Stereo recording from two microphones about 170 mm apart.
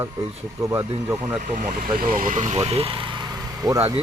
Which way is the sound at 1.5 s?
50° right (ahead or behind).